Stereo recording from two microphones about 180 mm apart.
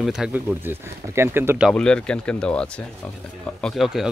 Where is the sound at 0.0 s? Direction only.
Centre (ahead or behind).